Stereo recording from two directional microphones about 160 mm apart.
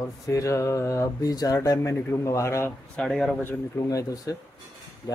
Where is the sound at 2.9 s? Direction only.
5° left (ahead or behind); by 4.3 s 20° left (ahead or behind).